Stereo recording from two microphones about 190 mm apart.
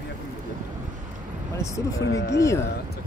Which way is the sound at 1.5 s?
15° left (ahead or behind).